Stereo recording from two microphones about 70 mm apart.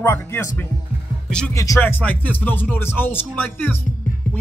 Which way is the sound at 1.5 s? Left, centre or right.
Left.